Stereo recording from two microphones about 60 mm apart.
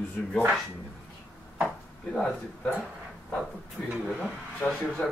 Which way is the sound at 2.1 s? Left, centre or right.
Centre.